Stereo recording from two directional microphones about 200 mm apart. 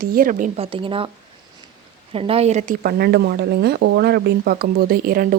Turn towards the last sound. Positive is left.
turn(degrees=-50)  # may be behind; listen again after turning